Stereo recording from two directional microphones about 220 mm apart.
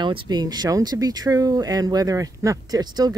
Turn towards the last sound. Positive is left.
turn(degrees=-15)  # may be behind; listen again after turning